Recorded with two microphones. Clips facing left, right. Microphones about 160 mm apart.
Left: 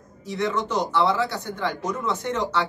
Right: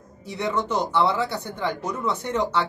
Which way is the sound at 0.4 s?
15° right (ahead or behind).